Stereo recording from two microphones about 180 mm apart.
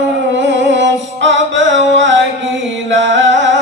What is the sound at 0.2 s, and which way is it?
Music, 90° right.